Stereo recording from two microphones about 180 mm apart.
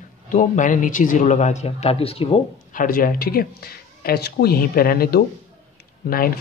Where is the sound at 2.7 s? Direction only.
50° left (ahead or behind).